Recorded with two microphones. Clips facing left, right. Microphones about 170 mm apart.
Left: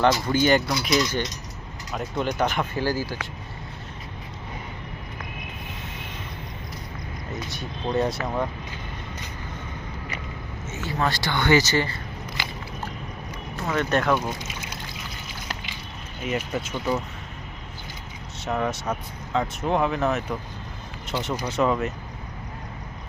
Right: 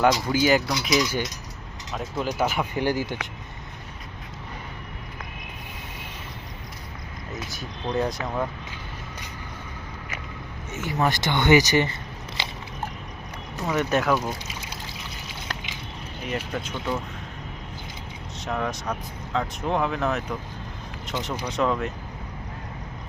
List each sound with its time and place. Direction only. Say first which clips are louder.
0.0 s speech: even; 5° right (ahead or behind)
0.9 s cutlery: even; 10° right (ahead or behind)
1.9 s speech: left 1 dB; centre (ahead or behind)
2.7 s speech: right 1 dB; 20° right (ahead or behind)
7.3 s speech: left 1 dB; centre (ahead or behind)
10.7 s speech: right 2 dB; 20° right (ahead or behind)
13.6 s speech: even; 10° right (ahead or behind)
16.5 s speech: left 2 dB; 5° left (ahead or behind)
18.4 s speech: left 2 dB; 5° left (ahead or behind)